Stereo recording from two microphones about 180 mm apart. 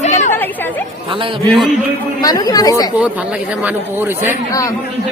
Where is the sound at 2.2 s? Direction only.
20° left (ahead or behind).